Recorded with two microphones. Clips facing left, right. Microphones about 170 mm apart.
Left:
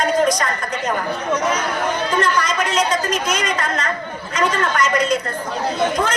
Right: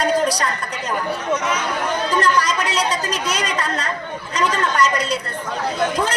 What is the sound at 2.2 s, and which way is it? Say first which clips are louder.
Chatter: right 1 dB; 35° right (ahead or behind).